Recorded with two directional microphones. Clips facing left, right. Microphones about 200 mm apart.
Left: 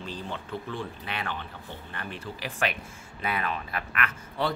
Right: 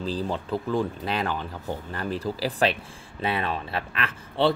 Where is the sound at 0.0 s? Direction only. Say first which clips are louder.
Right 8 dB; 35° right (ahead or behind).